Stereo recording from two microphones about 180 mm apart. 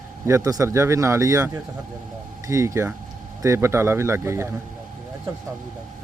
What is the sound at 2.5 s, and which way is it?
Speech, 15° right (ahead or behind).